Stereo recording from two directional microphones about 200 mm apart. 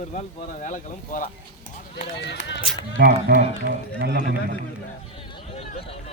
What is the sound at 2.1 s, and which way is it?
Speech, 60° left (ahead or behind).